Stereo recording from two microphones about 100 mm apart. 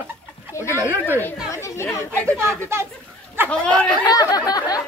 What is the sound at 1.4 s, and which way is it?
Chatter, 30° left (ahead or behind).